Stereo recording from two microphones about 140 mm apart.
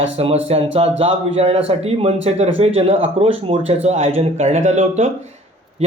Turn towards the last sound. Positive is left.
turn(degrees=-50)  # may be behind; listen again after turning